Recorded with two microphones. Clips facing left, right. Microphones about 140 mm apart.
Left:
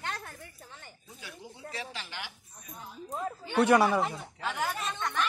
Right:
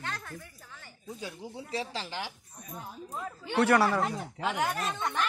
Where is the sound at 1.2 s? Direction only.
35° right (ahead or behind).